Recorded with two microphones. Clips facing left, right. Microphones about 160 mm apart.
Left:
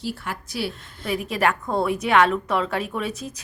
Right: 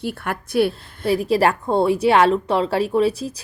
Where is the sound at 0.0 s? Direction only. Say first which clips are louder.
Right 4 dB; 60° right (ahead or behind).